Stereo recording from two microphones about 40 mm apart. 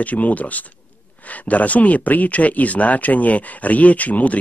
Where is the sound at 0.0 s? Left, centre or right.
Left.